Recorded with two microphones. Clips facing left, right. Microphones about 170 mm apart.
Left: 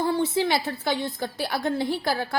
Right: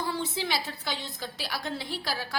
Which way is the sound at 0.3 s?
55° left (ahead or behind).